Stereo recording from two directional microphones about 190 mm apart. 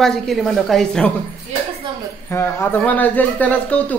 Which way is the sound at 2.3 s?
15° left (ahead or behind).